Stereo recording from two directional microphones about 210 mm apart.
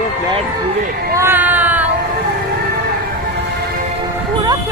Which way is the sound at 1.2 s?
10° right (ahead or behind).